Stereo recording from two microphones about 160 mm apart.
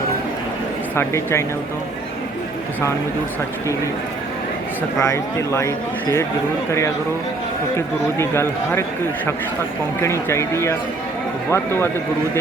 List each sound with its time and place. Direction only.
0.9 s speech: 15° left (ahead or behind)
4.9 s speech: 20° left (ahead or behind)
8.2 s speech: 15° left (ahead or behind)
10.0 s speech: 15° left (ahead or behind)